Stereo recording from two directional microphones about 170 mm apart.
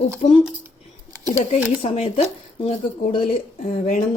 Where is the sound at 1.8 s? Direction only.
35° left (ahead or behind).